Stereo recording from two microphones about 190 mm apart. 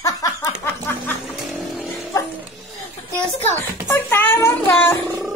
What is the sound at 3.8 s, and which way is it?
Speech, 15° left (ahead or behind).